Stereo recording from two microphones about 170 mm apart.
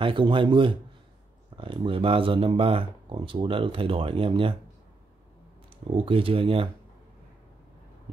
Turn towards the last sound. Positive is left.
turn(degrees=-30)  # may be behind; listen again after turning